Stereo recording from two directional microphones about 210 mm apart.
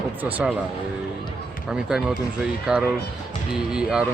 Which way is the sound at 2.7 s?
5° right (ahead or behind).